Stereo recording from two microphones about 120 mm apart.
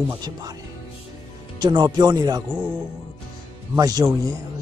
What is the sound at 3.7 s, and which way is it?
Speech, 35° right (ahead or behind).